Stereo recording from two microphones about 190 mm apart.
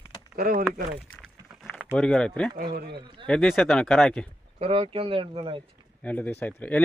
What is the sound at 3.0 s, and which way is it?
Speech, 25° right (ahead or behind).